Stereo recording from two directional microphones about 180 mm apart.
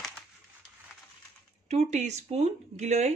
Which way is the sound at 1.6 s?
40° right (ahead or behind).